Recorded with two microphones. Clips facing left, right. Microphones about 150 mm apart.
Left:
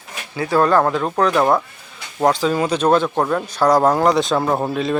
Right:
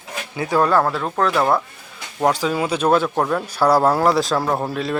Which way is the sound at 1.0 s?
5° left (ahead or behind).